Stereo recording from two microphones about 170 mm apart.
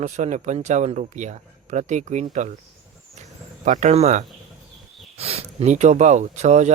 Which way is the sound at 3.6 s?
45° right (ahead or behind).